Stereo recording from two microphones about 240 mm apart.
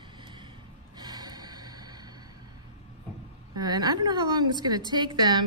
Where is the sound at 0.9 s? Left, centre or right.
Centre.